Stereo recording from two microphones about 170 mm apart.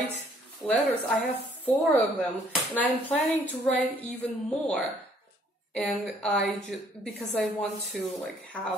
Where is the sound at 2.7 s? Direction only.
10° left (ahead or behind).